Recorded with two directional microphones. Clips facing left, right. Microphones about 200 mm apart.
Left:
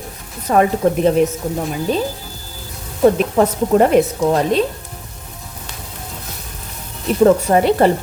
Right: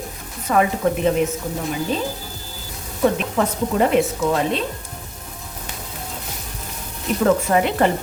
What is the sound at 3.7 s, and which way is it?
Speech, 45° left (ahead or behind).